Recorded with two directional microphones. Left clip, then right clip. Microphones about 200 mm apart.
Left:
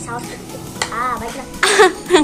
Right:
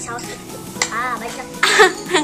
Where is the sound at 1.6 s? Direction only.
40° left (ahead or behind).